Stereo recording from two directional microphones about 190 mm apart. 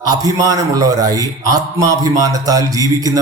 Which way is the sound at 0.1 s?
20° right (ahead or behind).